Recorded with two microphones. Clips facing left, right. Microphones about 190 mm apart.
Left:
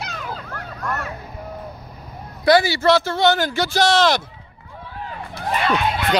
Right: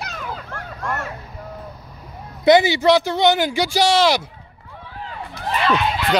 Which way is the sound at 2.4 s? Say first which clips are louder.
Right 2 dB; 20° right (ahead or behind).